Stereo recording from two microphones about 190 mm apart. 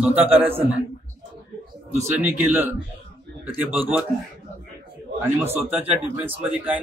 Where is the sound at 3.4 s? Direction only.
10° right (ahead or behind).